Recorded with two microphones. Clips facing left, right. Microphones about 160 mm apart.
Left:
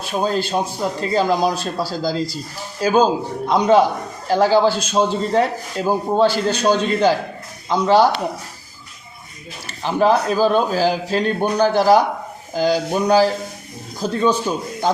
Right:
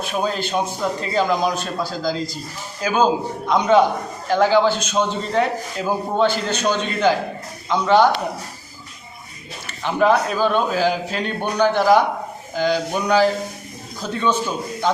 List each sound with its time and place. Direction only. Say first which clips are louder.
0.0 s a man's voice: left 2 dB; 35° left (ahead or behind)
9.6 s a man's voice: left 1 dB; 35° left (ahead or behind)